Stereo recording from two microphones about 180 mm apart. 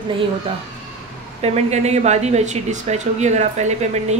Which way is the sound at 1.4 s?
35° right (ahead or behind).